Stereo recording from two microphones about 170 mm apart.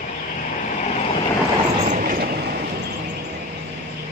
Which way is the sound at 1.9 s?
55° right (ahead or behind).